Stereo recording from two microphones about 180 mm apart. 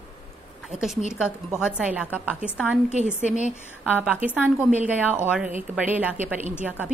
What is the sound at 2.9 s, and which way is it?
Speech, 40° right (ahead or behind).